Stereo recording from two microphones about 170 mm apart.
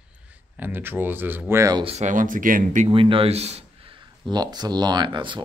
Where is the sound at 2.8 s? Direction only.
30° right (ahead or behind).